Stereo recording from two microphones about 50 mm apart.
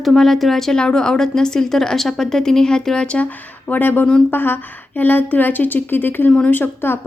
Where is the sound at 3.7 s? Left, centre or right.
Left.